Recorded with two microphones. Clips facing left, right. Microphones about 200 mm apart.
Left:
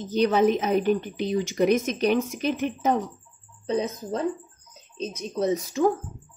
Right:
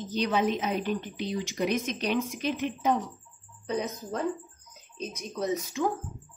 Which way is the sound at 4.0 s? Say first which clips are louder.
Left 4 dB; 20° left (ahead or behind).